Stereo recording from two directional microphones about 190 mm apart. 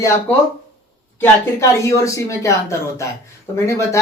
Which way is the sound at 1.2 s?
15° left (ahead or behind).